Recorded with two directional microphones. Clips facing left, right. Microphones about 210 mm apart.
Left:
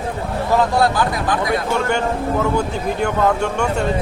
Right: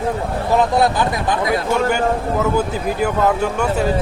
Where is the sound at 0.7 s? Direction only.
20° right (ahead or behind).